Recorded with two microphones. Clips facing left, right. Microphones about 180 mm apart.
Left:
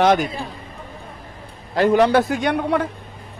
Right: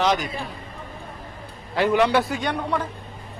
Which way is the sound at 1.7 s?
40° left (ahead or behind).